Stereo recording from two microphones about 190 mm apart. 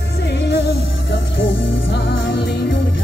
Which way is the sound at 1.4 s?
60° left (ahead or behind).